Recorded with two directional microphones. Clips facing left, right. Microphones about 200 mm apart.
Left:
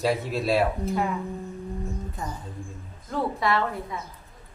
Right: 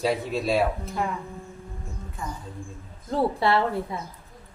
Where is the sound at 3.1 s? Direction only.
30° right (ahead or behind).